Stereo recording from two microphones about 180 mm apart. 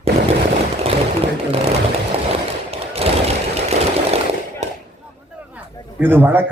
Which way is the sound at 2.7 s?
35° right (ahead or behind).